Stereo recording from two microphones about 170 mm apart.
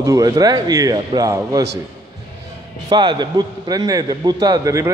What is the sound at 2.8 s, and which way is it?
A man's voice, 25° right (ahead or behind).